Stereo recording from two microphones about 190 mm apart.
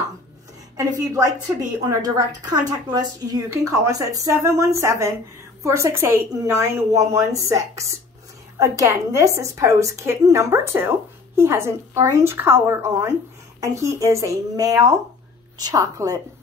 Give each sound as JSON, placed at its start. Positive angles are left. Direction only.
{"t": 0.7, "sound": "a woman's voice", "side_deg": -15}